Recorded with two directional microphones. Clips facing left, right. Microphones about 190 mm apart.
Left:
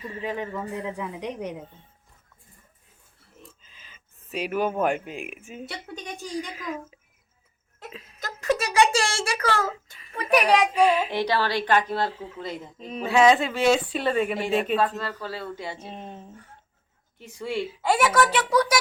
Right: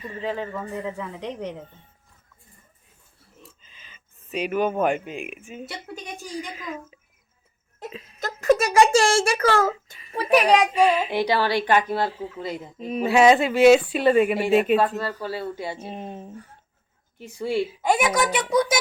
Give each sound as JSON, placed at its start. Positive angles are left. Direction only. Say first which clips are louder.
{"t": 0.0, "sound": "a woman's voice", "louder": "right 2 dB", "side_deg": 5}
{"t": 3.4, "sound": "a woman's voice", "louder": "left 1 dB", "side_deg": 5}
{"t": 8.2, "sound": "a sound", "louder": "right 6 dB", "side_deg": -45}
{"t": 8.8, "sound": "a woman's voice", "louder": "right 5 dB", "side_deg": -45}
{"t": 10.2, "sound": "a child's voice", "louder": "right 2 dB", "side_deg": -25}
{"t": 10.8, "sound": "a woman's voice", "louder": "right 1 dB", "side_deg": 0}